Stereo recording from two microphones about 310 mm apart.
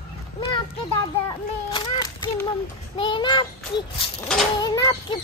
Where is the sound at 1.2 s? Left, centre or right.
Centre.